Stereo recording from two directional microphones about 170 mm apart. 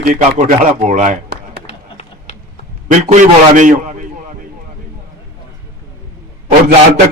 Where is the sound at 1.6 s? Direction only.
40° left (ahead or behind).